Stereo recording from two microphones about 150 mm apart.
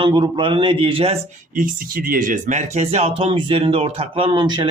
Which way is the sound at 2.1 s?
60° right (ahead or behind).